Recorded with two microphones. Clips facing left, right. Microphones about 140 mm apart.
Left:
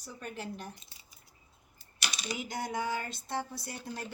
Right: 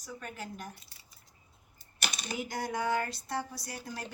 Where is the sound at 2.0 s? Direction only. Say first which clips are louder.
Even; 50° right (ahead or behind).